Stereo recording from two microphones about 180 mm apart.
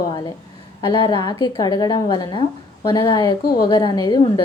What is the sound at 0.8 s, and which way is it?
Speech, 20° left (ahead or behind).